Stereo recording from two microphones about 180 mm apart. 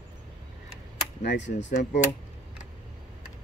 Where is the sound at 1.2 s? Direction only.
75° left (ahead or behind).